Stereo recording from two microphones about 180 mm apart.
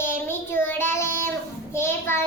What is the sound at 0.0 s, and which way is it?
Child singing, 10° left (ahead or behind).